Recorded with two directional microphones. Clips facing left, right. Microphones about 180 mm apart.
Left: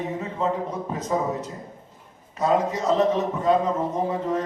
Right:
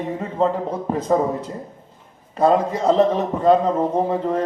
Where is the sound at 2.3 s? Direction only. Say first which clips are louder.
Right 5 dB; 30° right (ahead or behind).